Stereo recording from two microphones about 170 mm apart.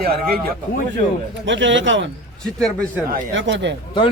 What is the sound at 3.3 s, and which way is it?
Speech, 90° right.